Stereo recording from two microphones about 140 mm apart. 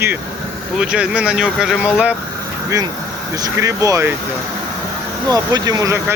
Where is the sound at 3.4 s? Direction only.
20° right (ahead or behind).